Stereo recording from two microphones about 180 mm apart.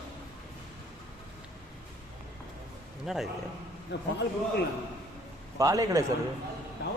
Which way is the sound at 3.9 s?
70° left (ahead or behind).